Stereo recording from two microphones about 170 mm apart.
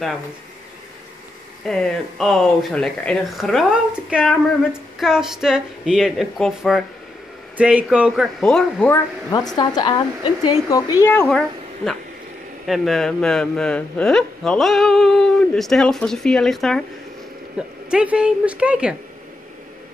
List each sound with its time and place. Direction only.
1.7 s a man's voice: centre (ahead or behind)
8.9 s speech: 20° left (ahead or behind)
11.0 s a woman's voice: 10° left (ahead or behind)
17.8 s a man's voice: 5° right (ahead or behind)